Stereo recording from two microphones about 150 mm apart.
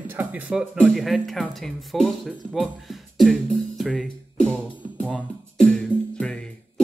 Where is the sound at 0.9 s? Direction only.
Centre (ahead or behind).